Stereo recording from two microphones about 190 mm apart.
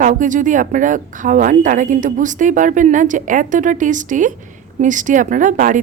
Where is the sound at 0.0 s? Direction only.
45° right (ahead or behind).